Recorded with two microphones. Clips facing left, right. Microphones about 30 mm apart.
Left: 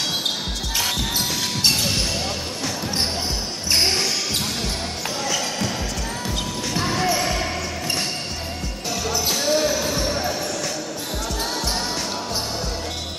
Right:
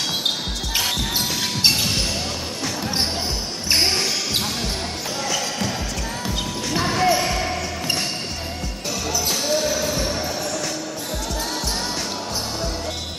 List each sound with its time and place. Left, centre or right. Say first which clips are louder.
0.7 s basketball bounce: right 1 dB; centre
1.7 s music: left 1 dB; centre
3.7 s basketball bounce: even; centre
6.2 s basketball bounce: right 1 dB; centre
9.3 s basketball bounce: left 2 dB; centre